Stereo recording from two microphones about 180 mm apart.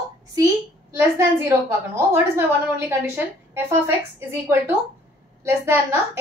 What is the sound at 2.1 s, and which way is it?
A woman's voice, 15° right (ahead or behind).